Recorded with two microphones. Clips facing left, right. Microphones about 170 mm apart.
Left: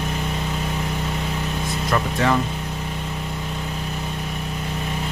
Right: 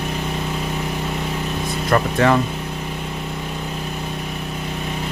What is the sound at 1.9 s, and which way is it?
Speech, 55° right (ahead or behind).